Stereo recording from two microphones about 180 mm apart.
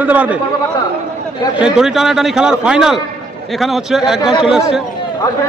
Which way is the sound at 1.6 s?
Centre (ahead or behind).